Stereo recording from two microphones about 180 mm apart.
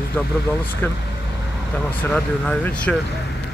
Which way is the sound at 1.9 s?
10° left (ahead or behind).